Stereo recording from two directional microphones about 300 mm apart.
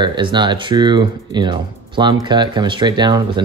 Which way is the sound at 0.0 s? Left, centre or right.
Centre.